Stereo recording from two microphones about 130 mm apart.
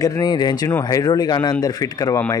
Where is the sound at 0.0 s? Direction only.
30° left (ahead or behind).